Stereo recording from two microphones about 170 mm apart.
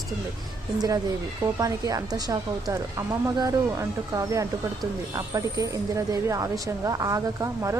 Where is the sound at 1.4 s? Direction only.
20° right (ahead or behind).